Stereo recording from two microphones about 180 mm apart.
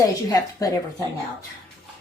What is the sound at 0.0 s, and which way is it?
A woman's voice, 20° left (ahead or behind).